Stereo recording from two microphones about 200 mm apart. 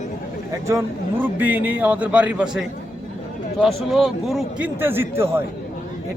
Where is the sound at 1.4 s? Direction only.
10° right (ahead or behind).